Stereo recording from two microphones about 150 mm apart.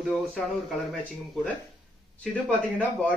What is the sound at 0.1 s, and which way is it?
Speech, centre (ahead or behind).